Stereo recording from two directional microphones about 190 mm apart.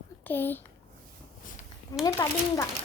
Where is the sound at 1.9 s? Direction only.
15° left (ahead or behind).